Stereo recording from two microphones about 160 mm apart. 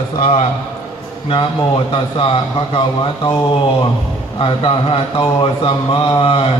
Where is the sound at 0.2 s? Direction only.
40° left (ahead or behind).